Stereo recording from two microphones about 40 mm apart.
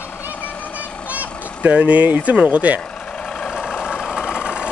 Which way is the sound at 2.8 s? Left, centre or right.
Left.